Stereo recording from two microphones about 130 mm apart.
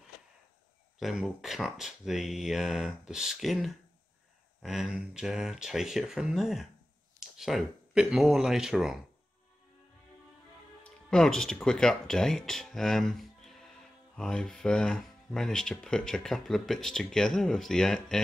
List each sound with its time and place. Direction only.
0.9 s speech: centre (ahead or behind)
10.8 s speech: 5° left (ahead or behind)